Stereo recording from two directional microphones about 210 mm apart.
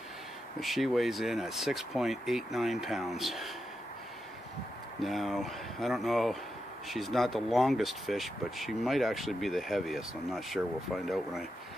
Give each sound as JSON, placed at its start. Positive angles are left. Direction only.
{"t": 0.6, "sound": "speech", "side_deg": 0}
{"t": 5.0, "sound": "speech", "side_deg": 0}